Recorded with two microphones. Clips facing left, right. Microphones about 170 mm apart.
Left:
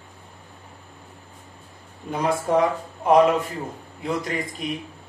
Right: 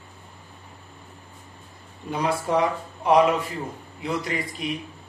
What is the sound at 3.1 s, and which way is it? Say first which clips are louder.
Speech: left 2 dB; 50° left (ahead or behind).